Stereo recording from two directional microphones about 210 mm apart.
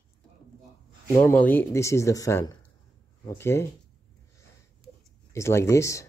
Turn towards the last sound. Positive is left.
turn(degrees=15)  # may be behind; listen again after turning